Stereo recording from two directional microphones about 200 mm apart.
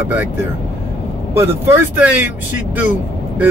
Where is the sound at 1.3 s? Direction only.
15° right (ahead or behind).